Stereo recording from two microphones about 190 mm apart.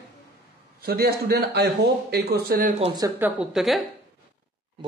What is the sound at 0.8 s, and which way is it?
A man's voice, 55° right (ahead or behind).